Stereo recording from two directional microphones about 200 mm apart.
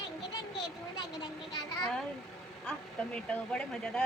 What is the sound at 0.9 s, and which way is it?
Speech, 20° left (ahead or behind).